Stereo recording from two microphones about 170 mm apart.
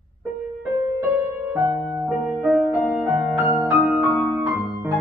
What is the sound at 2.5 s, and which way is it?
Music, centre (ahead or behind).